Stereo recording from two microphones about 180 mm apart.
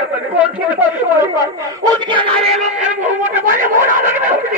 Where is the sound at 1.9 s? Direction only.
25° right (ahead or behind); by 4.6 s 45° right (ahead or behind).